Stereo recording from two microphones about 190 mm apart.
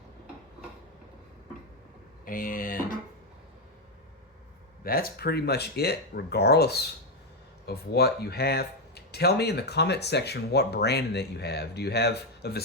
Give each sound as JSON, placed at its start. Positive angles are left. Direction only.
{"t": 2.2, "sound": "speech", "side_deg": 45}
{"t": 4.8, "sound": "speech", "side_deg": 50}